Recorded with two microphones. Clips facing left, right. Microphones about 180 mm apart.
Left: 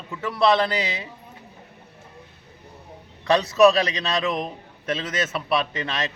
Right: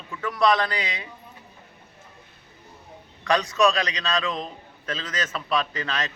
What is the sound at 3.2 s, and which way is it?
A man's voice, 25° left (ahead or behind).